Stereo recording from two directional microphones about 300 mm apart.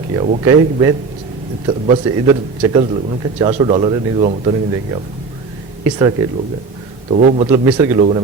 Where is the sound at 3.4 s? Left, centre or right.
Centre.